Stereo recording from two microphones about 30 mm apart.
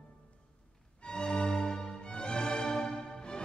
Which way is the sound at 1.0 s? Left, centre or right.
Left.